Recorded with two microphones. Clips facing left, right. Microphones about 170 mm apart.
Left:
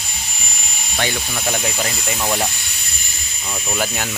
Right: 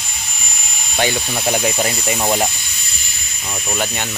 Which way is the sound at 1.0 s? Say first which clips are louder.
Right 4 dB; 15° right (ahead or behind).